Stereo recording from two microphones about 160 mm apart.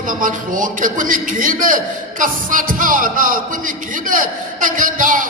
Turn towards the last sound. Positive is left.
turn(degrees=-55)  # may be behind; listen again after turning